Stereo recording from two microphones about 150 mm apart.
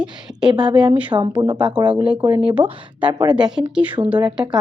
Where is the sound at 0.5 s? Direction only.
30° right (ahead or behind).